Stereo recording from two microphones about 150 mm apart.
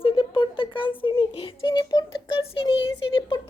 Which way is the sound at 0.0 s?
35° left (ahead or behind).